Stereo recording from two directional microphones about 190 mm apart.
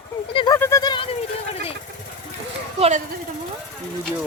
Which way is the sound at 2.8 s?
35° right (ahead or behind).